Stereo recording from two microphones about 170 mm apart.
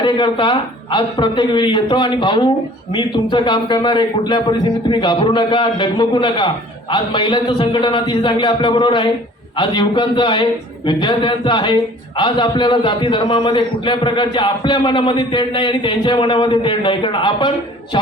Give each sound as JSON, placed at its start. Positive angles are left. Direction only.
{"t": 0.0, "sound": "a man's voice", "side_deg": 30}